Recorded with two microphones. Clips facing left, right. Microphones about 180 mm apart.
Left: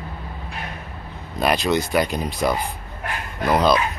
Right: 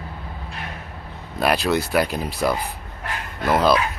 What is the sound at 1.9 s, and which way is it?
Speech, 5° right (ahead or behind).